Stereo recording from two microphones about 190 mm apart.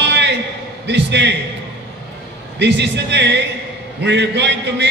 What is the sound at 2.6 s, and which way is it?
A man's voice, 65° right (ahead or behind).